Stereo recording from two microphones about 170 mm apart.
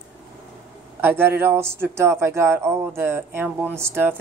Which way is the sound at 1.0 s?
15° right (ahead or behind).